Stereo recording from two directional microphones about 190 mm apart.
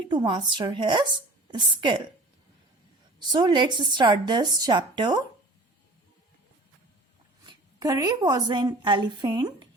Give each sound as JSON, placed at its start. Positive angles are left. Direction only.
{"t": 0.1, "sound": "a woman's voice", "side_deg": -25}
{"t": 3.2, "sound": "a woman's voice", "side_deg": -20}
{"t": 7.4, "sound": "a woman's voice", "side_deg": -20}